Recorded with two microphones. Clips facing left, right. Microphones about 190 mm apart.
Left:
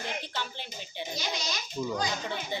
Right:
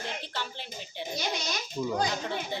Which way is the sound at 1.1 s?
55° right (ahead or behind).